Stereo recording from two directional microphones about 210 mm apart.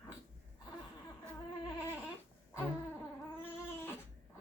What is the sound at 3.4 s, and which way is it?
Cat, 10° left (ahead or behind).